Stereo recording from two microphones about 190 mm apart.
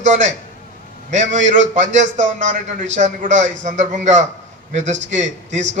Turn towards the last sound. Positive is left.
turn(degrees=-40)  # may be behind; listen again after turning